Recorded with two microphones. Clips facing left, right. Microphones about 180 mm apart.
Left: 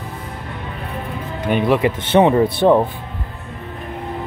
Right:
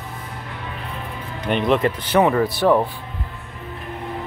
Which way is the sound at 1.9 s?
25° left (ahead or behind).